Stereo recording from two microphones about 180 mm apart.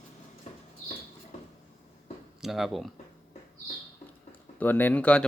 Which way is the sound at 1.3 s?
40° left (ahead or behind).